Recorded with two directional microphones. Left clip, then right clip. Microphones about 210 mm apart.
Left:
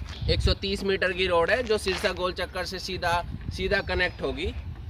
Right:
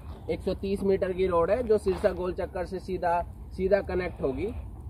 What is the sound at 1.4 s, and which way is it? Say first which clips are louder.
Speech: even; 25° right (ahead or behind).